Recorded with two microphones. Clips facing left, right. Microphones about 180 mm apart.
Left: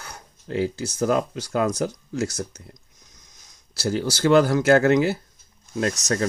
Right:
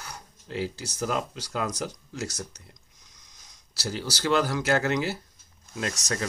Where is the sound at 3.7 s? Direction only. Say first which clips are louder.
Left 8 dB; 50° left (ahead or behind).